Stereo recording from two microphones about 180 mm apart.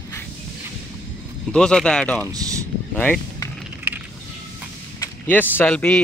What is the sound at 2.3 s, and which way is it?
Speech, 20° right (ahead or behind).